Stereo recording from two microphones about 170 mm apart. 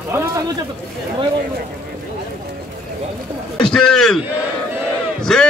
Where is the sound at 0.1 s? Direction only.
15° right (ahead or behind).